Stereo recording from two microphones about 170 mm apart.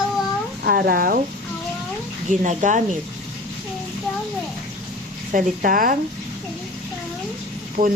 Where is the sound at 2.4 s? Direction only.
45° right (ahead or behind).